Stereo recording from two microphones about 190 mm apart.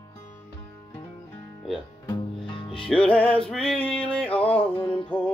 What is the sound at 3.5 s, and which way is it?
Male singing, 5° left (ahead or behind).